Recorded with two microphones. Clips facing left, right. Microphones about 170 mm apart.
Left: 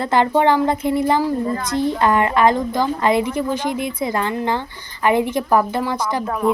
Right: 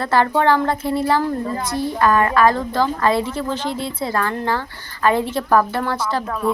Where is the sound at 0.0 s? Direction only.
20° left (ahead or behind).